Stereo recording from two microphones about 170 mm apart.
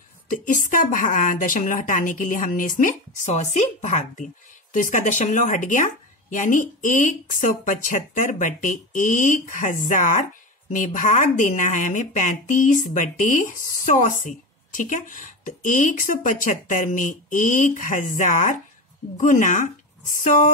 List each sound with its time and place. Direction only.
0.3 s speech: 50° left (ahead or behind)